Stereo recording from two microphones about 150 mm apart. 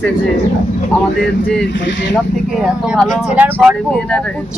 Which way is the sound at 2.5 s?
Centre (ahead or behind).